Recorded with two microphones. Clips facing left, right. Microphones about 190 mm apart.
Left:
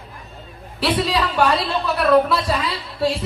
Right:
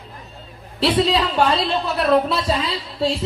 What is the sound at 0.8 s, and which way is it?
A woman's voice, 25° right (ahead or behind).